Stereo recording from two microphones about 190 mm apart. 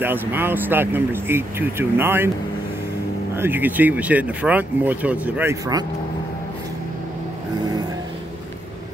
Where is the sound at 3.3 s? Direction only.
10° right (ahead or behind).